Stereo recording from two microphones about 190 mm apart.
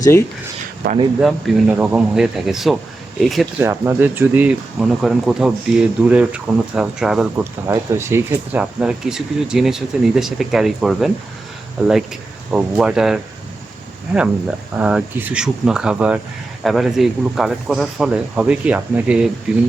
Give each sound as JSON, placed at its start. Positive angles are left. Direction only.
{"t": 0.0, "sound": "speech", "side_deg": 15}
{"t": 0.8, "sound": "speech", "side_deg": -60}
{"t": 1.2, "sound": "speech", "side_deg": -5}
{"t": 3.6, "sound": "speech", "side_deg": -15}
{"t": 7.7, "sound": "speech", "side_deg": -15}
{"t": 12.5, "sound": "speech", "side_deg": -5}
{"t": 14.8, "sound": "speech", "side_deg": -5}